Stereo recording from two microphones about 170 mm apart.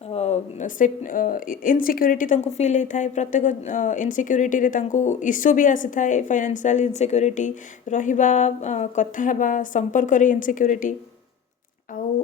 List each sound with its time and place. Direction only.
0.1 s a woman's voice: 40° left (ahead or behind)